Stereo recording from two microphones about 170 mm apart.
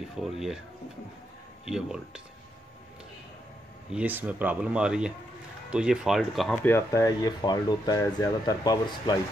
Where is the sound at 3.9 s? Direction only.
10° right (ahead or behind).